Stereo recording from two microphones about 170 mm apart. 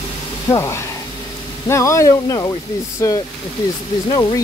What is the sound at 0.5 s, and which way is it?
Speech, 20° left (ahead or behind).